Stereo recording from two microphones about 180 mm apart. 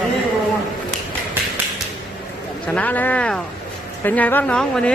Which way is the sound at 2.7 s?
10° left (ahead or behind).